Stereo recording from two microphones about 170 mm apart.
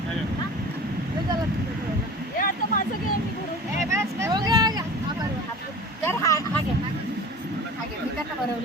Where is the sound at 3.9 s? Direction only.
15° right (ahead or behind).